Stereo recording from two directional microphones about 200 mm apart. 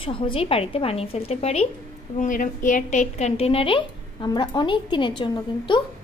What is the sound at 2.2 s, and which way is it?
A woman's voice, 40° left (ahead or behind).